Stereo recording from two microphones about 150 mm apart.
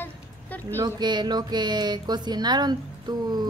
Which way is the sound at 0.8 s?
30° right (ahead or behind).